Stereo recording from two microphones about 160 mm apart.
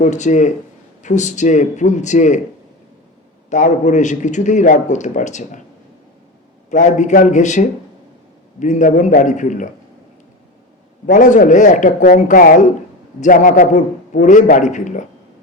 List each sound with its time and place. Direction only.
0.0 s a man's voice: 50° left (ahead or behind)
3.5 s a man's voice: 50° left (ahead or behind)
6.7 s a man's voice: 50° left (ahead or behind)
11.0 s a man's voice: 50° left (ahead or behind)